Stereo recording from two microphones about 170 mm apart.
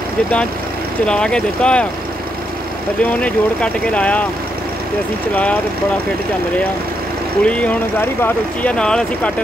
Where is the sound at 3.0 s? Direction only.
10° left (ahead or behind).